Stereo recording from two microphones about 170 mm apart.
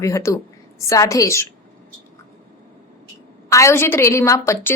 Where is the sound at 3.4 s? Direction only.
15° left (ahead or behind).